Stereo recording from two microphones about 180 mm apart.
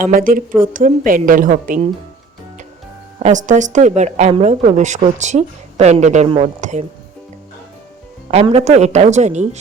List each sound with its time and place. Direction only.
0.0 s a woman's voice: 50° right (ahead or behind)
3.2 s a woman's voice: 40° right (ahead or behind)
8.3 s a woman's voice: 35° right (ahead or behind)